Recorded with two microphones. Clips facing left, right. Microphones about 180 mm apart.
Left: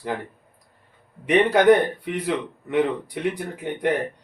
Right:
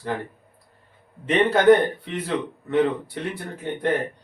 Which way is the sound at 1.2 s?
15° left (ahead or behind).